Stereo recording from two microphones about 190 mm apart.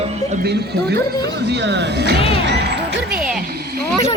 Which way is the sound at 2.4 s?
65° right (ahead or behind).